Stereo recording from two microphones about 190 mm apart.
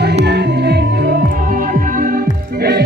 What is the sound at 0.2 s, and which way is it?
Music, 60° right (ahead or behind).